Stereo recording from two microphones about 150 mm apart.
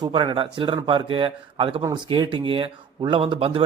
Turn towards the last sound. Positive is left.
turn(degrees=-35)  # may be behind; listen again after turning